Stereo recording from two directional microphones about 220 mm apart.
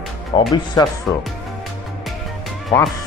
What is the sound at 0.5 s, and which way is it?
Speech, 20° left (ahead or behind).